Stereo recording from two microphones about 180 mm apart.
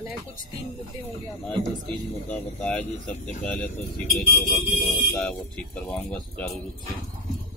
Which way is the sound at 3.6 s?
50° left (ahead or behind).